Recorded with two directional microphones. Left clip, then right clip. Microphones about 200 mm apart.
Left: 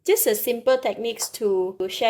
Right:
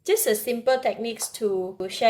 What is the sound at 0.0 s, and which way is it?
A woman's voice, 40° left (ahead or behind).